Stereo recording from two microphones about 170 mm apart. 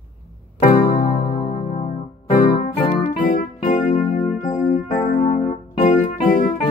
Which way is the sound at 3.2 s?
50° left (ahead or behind).